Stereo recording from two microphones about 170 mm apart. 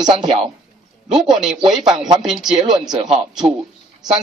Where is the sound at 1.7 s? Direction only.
5° right (ahead or behind).